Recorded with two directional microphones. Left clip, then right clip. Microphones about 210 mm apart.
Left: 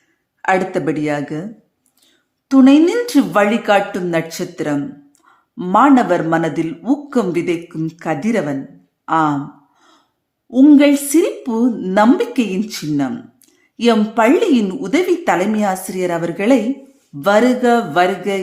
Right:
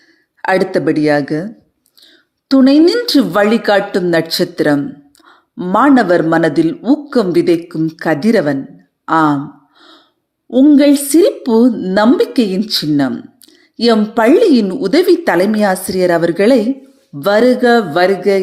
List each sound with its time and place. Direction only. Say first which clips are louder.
0.4 s speech: right 3 dB; 20° right (ahead or behind)
2.5 s speech: right 2 dB; 15° right (ahead or behind)
10.5 s a woman's voice: right 1 dB; centre (ahead or behind)
11.1 s speech: right 6 dB; 20° right (ahead or behind)